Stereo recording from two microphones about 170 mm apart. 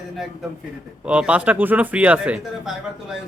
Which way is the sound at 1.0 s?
5° right (ahead or behind).